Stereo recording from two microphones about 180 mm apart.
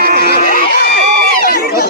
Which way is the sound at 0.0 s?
55° right (ahead or behind).